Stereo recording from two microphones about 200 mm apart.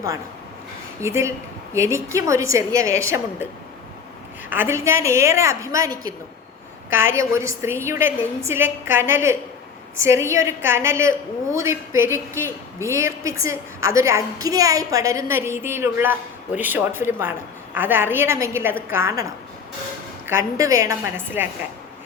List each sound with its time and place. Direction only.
1.0 s a woman's voice: 15° right (ahead or behind)
4.4 s a woman's voice: 10° right (ahead or behind)
7.1 s a woman's voice: 15° right (ahead or behind)